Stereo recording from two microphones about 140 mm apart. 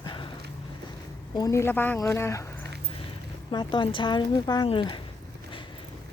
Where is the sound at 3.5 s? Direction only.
35° left (ahead or behind).